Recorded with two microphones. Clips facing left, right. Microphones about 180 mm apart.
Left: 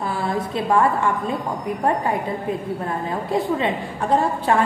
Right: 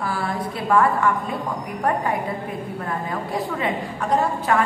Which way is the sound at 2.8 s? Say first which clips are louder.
Left 2 dB; 25° left (ahead or behind).